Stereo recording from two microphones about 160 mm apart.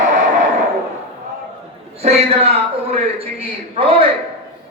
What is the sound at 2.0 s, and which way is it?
Speech, 40° right (ahead or behind).